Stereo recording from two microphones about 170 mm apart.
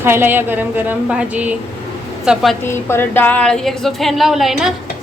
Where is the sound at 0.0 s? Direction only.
15° right (ahead or behind).